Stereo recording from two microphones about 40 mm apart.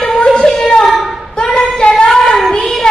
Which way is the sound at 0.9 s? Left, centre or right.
Centre.